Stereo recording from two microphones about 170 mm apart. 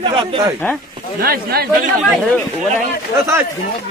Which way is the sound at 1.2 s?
65° right (ahead or behind).